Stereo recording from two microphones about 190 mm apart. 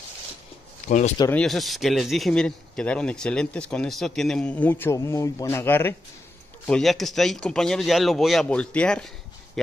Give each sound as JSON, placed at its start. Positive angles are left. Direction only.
{"t": 0.8, "sound": "speech", "side_deg": 40}
{"t": 1.3, "sound": "a man's voice", "side_deg": 0}